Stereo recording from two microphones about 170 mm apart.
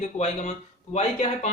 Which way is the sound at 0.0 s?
40° left (ahead or behind).